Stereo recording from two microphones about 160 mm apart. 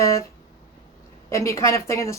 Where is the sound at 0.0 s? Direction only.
20° left (ahead or behind).